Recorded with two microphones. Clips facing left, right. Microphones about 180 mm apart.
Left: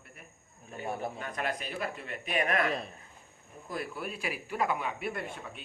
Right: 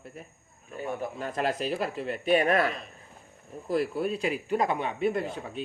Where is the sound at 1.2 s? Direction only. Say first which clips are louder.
Right 6 dB; 30° right (ahead or behind).